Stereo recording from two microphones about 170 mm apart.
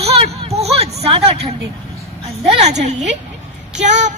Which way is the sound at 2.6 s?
45° right (ahead or behind).